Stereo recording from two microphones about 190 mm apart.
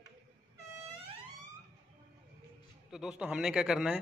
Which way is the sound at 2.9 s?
5° right (ahead or behind).